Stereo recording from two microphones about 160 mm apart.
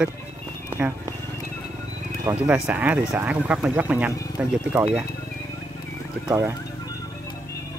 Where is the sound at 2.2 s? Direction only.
10° right (ahead or behind).